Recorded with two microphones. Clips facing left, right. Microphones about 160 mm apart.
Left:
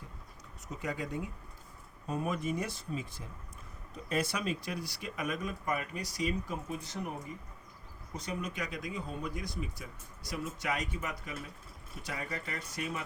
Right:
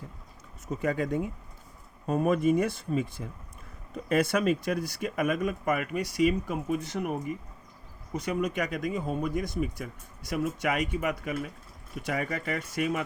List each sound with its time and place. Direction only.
0.7 s speech: 55° right (ahead or behind)
8.4 s speech: 55° right (ahead or behind)
12.1 s speech: 75° right (ahead or behind)